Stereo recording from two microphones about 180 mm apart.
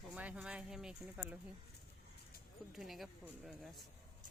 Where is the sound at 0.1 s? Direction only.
5° right (ahead or behind).